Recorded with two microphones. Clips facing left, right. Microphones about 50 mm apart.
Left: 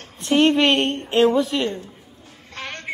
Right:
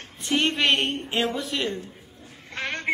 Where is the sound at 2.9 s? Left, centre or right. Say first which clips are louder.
Right 6 dB; right.